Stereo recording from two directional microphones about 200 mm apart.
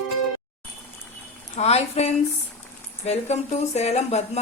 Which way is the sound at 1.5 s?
30° left (ahead or behind).